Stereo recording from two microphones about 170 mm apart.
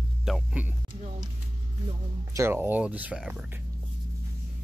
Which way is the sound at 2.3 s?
15° right (ahead or behind).